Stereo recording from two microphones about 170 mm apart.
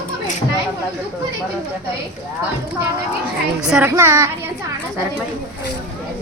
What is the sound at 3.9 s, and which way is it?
Speech, 15° right (ahead or behind).